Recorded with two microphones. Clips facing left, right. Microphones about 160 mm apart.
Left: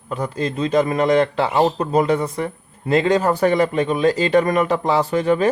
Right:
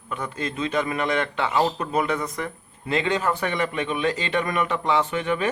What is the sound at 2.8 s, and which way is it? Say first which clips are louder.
A man's voice: left 7 dB; 40° left (ahead or behind).